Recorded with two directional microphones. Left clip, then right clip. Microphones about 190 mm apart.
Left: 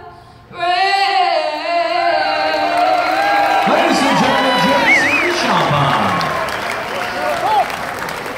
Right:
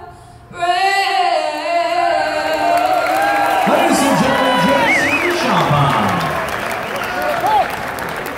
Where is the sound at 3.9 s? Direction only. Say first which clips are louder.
Left 1 dB; 15° right (ahead or behind).